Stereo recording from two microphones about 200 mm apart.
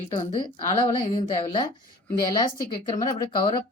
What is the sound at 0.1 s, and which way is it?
Speech, 25° left (ahead or behind).